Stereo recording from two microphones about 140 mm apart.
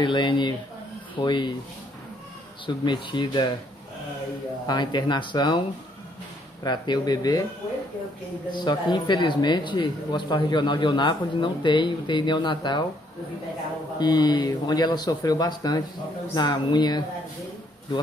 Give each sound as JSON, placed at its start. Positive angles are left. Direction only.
{"t": 0.0, "sound": "speech", "side_deg": 35}
{"t": 2.6, "sound": "speech", "side_deg": 35}
{"t": 4.6, "sound": "speech", "side_deg": 30}
{"t": 6.6, "sound": "speech", "side_deg": 30}
{"t": 8.5, "sound": "speech", "side_deg": 30}
{"t": 13.9, "sound": "speech", "side_deg": 30}